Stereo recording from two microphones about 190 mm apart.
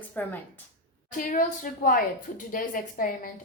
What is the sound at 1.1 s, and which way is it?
A woman's voice, 45° left (ahead or behind).